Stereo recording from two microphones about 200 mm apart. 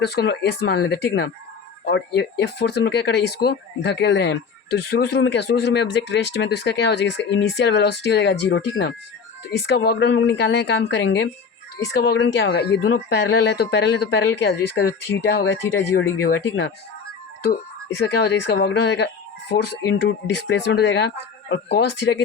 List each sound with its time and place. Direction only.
0.0 s speech: 55° left (ahead or behind)